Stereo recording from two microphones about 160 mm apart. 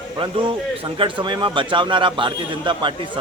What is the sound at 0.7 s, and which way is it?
A man's voice, 35° right (ahead or behind).